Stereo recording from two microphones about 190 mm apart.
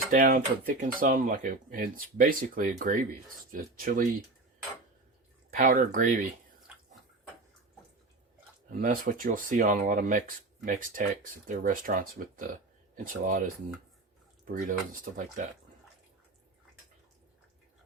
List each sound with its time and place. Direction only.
0.1 s speech: 45° right (ahead or behind)
5.5 s speech: 40° right (ahead or behind)
8.8 s speech: 45° right (ahead or behind)